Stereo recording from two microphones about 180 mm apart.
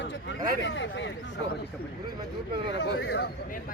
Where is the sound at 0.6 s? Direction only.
90° left.